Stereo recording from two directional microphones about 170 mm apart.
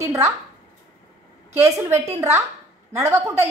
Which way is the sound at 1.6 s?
15° right (ahead or behind).